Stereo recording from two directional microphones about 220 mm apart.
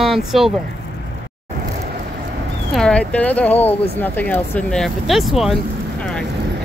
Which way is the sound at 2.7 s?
5° left (ahead or behind).